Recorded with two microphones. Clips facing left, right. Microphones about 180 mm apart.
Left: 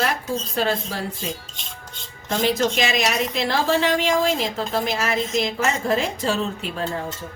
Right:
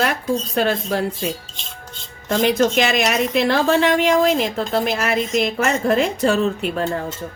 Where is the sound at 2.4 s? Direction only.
55° right (ahead or behind).